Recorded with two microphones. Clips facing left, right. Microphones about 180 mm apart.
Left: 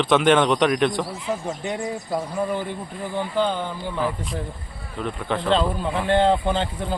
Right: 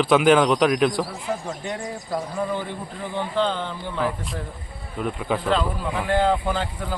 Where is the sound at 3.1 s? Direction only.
10° left (ahead or behind).